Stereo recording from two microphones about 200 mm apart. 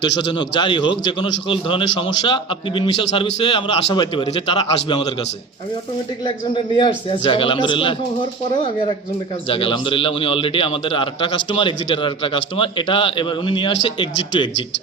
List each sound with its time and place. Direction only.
0.0 s a man's voice: 25° left (ahead or behind)
6.2 s a man's voice: 25° left (ahead or behind)
9.5 s a man's voice: 25° left (ahead or behind)